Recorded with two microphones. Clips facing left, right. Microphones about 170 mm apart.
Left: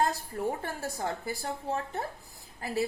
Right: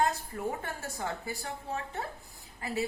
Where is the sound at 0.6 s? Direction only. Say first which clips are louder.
Left 3 dB; 35° left (ahead or behind).